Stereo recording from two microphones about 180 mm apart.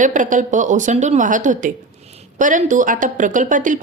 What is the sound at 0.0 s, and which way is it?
Speech, 45° right (ahead or behind).